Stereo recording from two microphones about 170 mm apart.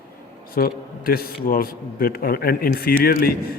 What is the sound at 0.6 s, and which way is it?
A man's voice, 60° left (ahead or behind).